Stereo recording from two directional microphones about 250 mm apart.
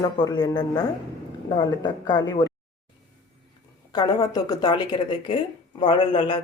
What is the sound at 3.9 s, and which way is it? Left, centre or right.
Speech, centre.